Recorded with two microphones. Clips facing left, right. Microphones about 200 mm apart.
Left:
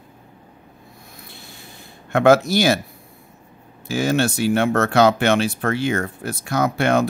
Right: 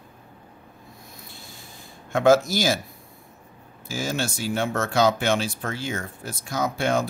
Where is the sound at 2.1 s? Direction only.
65° left (ahead or behind).